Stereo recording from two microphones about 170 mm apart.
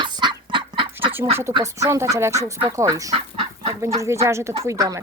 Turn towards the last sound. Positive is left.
turn(degrees=-20)  # may be behind; listen again after turning